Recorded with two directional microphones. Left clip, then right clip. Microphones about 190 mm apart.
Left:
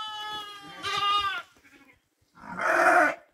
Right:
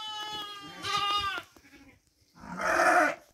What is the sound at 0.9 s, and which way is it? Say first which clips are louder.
Goat: left 3 dB; 50° right (ahead or behind).